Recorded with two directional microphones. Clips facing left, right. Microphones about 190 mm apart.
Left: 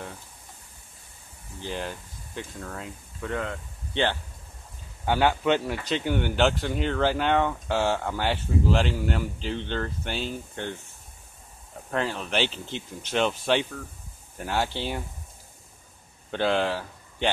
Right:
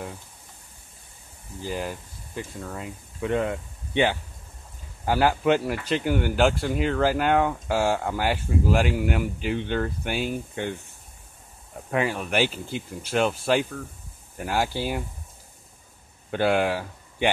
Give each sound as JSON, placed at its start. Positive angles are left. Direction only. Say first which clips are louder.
{"t": 1.6, "sound": "speech", "louder": "right 2 dB", "side_deg": -5}
{"t": 3.2, "sound": "speech", "louder": "right 6 dB", "side_deg": -20}
{"t": 11.9, "sound": "speech", "louder": "right 3 dB", "side_deg": -10}
{"t": 16.3, "sound": "speech", "louder": "right 2 dB", "side_deg": -10}